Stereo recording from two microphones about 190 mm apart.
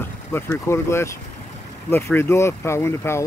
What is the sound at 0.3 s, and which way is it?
Speech, 15° left (ahead or behind).